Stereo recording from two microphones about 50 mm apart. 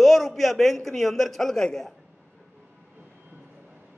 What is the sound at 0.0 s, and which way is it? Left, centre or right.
A man's voice, centre.